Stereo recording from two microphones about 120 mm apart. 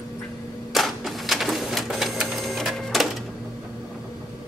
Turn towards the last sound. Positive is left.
turn(degrees=0)  # may be behind; listen again after turning